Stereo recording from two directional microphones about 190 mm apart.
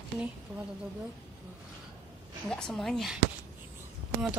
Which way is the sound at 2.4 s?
5° left (ahead or behind).